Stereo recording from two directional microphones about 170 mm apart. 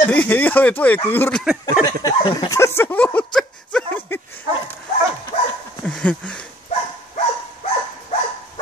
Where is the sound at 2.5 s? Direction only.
15° left (ahead or behind).